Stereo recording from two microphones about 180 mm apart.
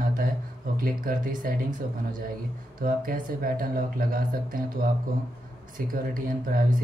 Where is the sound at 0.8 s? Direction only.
50° right (ahead or behind).